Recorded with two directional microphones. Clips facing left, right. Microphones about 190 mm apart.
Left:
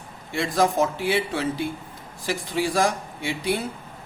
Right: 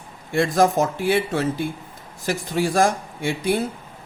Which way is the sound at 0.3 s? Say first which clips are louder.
Right 3 dB; 45° right (ahead or behind).